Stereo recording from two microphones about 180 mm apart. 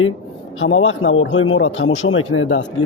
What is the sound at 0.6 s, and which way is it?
A man's voice, 90° left.